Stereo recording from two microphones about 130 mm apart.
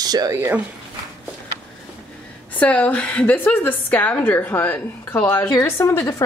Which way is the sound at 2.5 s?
10° left (ahead or behind).